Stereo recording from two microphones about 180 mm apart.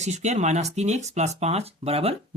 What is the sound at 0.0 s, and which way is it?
Speech, 40° right (ahead or behind).